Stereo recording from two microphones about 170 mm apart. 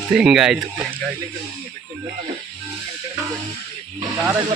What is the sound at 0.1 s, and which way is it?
Speech, 5° right (ahead or behind).